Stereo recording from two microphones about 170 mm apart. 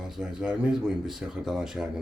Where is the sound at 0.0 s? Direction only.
5° right (ahead or behind).